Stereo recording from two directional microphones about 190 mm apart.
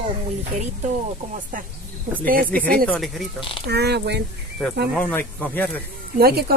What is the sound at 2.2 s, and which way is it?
Speech, 50° right (ahead or behind).